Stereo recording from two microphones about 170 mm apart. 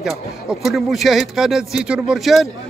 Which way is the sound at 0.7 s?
Centre (ahead or behind).